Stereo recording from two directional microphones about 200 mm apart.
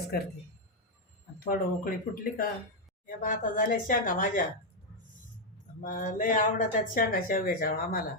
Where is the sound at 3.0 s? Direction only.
45° left (ahead or behind).